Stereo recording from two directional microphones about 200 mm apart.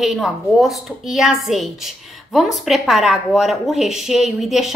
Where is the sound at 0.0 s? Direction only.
Centre (ahead or behind).